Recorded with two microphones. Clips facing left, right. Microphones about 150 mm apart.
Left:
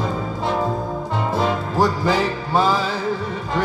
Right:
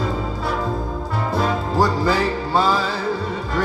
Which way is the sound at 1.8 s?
20° left (ahead or behind).